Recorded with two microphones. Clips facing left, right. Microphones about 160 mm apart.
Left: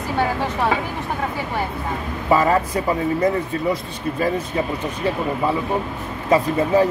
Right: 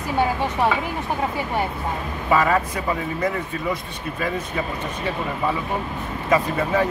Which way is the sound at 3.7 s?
35° left (ahead or behind).